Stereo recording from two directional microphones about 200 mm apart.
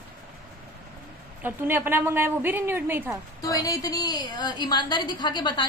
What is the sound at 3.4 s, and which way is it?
A woman's voice, 15° left (ahead or behind).